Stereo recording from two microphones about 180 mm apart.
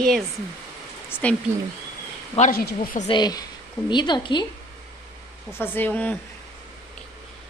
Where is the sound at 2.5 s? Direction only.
55° left (ahead or behind).